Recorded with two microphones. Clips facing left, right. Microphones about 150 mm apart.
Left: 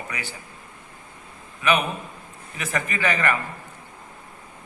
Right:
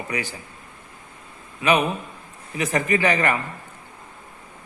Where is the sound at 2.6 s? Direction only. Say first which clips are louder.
Right 6 dB; 25° right (ahead or behind).